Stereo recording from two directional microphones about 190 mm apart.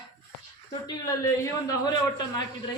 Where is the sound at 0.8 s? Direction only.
20° left (ahead or behind).